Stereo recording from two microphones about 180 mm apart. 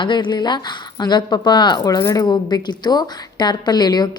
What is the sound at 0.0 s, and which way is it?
Speech, 25° left (ahead or behind).